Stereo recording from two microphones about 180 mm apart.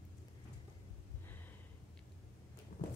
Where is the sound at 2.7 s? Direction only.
60° left (ahead or behind).